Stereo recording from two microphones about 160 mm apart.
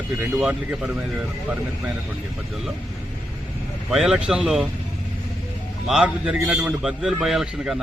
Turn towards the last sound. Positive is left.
turn(degrees=-5)  # may be behind; listen again after turning